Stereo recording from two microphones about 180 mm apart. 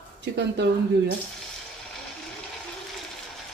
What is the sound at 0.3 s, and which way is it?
Speech, 70° right (ahead or behind).